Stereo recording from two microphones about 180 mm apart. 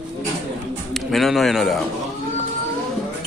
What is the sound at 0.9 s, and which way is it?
Speech, centre (ahead or behind).